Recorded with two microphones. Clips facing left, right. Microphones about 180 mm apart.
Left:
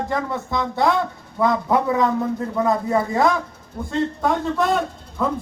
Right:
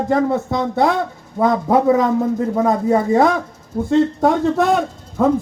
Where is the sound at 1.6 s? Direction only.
25° right (ahead or behind).